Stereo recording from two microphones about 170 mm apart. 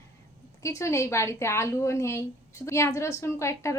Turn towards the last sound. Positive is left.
turn(degrees=15)  # may be behind; listen again after turning